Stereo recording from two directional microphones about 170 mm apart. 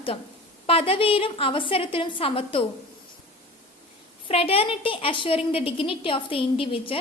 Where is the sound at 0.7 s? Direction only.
35° left (ahead or behind).